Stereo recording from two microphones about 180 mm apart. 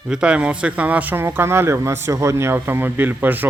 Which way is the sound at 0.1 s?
5° right (ahead or behind).